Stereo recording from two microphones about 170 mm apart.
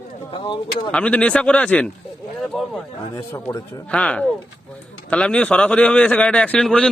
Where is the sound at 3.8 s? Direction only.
5° left (ahead or behind).